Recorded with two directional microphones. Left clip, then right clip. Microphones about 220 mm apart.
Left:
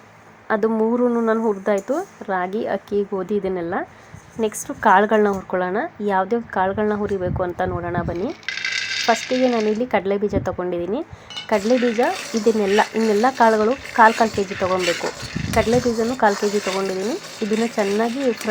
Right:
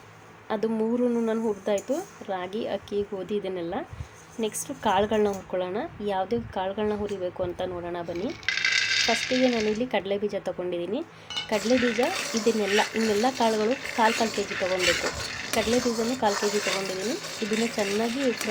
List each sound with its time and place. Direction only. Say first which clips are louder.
0.4 s a woman's voice: left 8 dB; 15° left (ahead or behind)
8.0 s coin: left 4 dB; centre (ahead or behind)
9.8 s a woman's voice: left 7 dB; 15° left (ahead or behind)
11.3 s dishes: left 6 dB; centre (ahead or behind)